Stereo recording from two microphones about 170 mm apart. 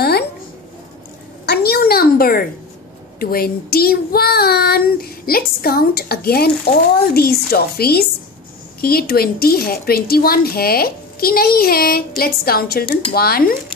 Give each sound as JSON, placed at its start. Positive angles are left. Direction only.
{"t": 1.4, "sound": "a sound", "side_deg": 70}
{"t": 3.2, "sound": "child singing", "side_deg": 60}
{"t": 7.2, "sound": "a woman's voice", "side_deg": 65}
{"t": 8.8, "sound": "child singing", "side_deg": 65}